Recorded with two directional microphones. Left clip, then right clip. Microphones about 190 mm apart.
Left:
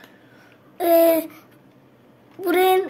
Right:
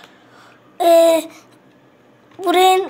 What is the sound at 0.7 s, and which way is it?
Babbling, 20° left (ahead or behind).